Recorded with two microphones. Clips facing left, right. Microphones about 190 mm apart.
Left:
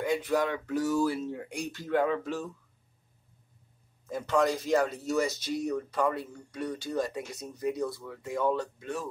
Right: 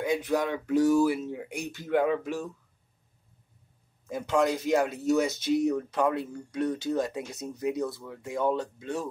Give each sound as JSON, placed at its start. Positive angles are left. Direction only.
{"t": 0.0, "sound": "speech", "side_deg": -15}
{"t": 4.1, "sound": "speech", "side_deg": -10}